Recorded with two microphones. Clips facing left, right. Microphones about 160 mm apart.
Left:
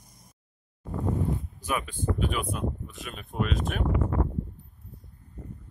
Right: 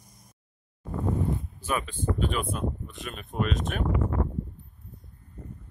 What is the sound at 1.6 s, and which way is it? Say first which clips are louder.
Speech: right 1 dB; 10° left (ahead or behind).